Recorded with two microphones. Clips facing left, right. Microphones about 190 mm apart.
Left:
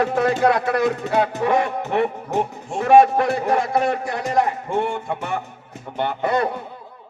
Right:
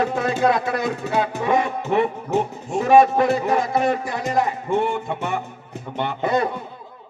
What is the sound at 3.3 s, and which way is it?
Speech, 55° left (ahead or behind).